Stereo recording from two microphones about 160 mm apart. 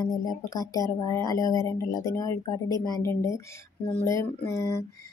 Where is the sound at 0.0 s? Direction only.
25° left (ahead or behind).